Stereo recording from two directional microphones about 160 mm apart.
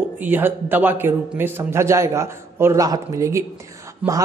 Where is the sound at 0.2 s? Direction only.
10° right (ahead or behind).